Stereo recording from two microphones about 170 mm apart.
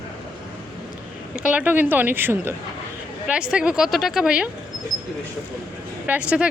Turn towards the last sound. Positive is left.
turn(degrees=-5)  # may be behind; listen again after turning